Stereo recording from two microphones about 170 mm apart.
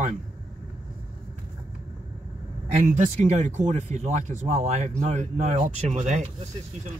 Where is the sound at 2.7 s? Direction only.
50° right (ahead or behind).